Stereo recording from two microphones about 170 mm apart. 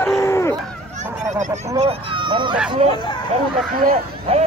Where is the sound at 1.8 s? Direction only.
35° right (ahead or behind).